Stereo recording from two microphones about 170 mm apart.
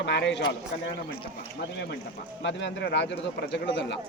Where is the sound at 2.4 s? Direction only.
90° left.